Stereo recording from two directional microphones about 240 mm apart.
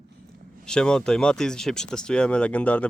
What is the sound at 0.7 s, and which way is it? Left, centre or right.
Speech, centre.